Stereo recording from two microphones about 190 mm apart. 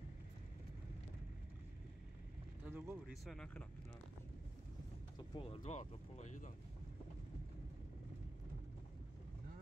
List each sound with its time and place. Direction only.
2.6 s a sound: 10° right (ahead or behind)
3.3 s speech: 5° left (ahead or behind)
5.3 s speech: 30° left (ahead or behind)